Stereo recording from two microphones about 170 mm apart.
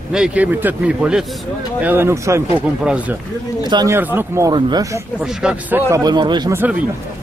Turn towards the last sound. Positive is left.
turn(degrees=-25)  # may be behind; listen again after turning